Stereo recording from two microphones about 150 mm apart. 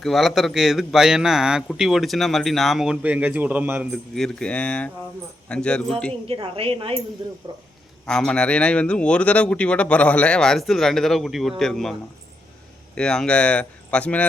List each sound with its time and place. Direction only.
0.0 s a man's voice: centre (ahead or behind)
4.1 s speech: 5° left (ahead or behind)
6.2 s speech: 40° right (ahead or behind)
8.0 s speech: 5° left (ahead or behind)
13.0 s speech: 5° left (ahead or behind)